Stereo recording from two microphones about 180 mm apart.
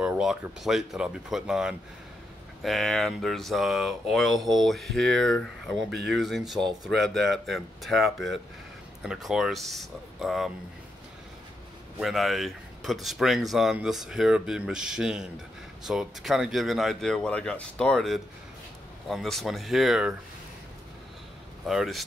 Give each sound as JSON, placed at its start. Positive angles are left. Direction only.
{"t": 0.0, "sound": "speech", "side_deg": -5}
{"t": 5.9, "sound": "speech", "side_deg": -70}
{"t": 6.1, "sound": "speech", "side_deg": 0}
{"t": 12.0, "sound": "speech", "side_deg": 0}
{"t": 21.6, "sound": "speech", "side_deg": 0}